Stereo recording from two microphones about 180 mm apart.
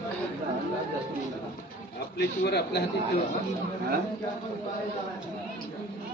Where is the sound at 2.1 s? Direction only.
70° left (ahead or behind).